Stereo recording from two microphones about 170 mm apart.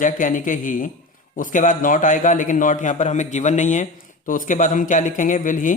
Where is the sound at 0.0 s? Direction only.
50° left (ahead or behind).